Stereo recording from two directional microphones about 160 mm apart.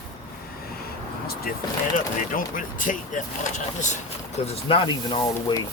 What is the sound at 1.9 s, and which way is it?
Speech, 55° left (ahead or behind).